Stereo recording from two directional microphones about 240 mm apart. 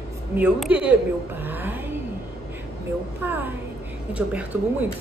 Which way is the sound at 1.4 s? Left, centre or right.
Centre.